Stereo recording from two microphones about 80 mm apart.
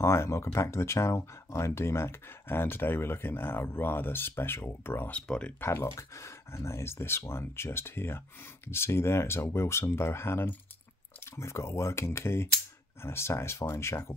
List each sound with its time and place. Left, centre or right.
0.0 s speech: left
5.1 s speech: centre
5.6 s speech: left